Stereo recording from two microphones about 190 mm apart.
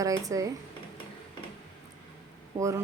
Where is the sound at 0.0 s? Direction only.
15° right (ahead or behind).